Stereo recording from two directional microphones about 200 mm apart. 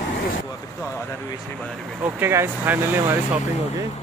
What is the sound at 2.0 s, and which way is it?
Speech, 10° right (ahead or behind).